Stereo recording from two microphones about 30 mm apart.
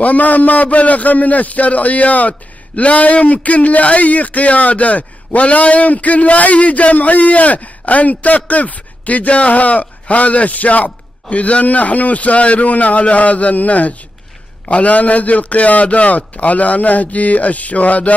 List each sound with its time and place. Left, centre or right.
0.0 s a man's voice: left